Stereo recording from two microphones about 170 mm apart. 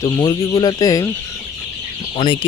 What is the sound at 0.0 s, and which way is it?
Speech, 25° left (ahead or behind).